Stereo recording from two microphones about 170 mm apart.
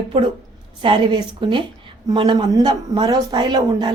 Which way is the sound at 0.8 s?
30° right (ahead or behind).